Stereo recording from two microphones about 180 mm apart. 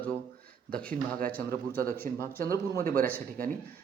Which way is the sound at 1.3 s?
10° left (ahead or behind).